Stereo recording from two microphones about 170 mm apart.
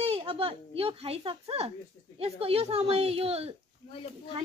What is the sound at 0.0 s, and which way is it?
A child's voice, 35° right (ahead or behind).